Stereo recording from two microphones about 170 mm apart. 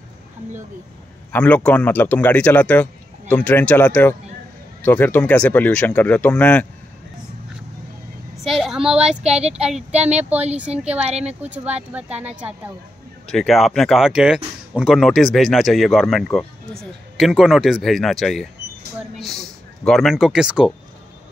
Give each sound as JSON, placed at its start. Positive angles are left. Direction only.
{"t": 1.3, "sound": "a man's voice", "side_deg": 10}
{"t": 8.5, "sound": "a woman's voice", "side_deg": 0}
{"t": 9.2, "sound": "speech", "side_deg": -40}
{"t": 9.6, "sound": "speech", "side_deg": -5}
{"t": 11.1, "sound": "speech", "side_deg": -40}
{"t": 11.4, "sound": "speech", "side_deg": -10}